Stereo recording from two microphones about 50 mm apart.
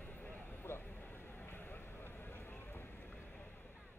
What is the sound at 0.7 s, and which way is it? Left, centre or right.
Vehicle, left.